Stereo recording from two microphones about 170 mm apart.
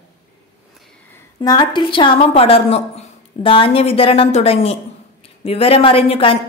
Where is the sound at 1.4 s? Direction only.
25° left (ahead or behind).